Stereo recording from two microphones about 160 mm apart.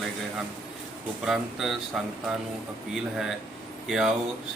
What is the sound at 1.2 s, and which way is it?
Speech, centre (ahead or behind).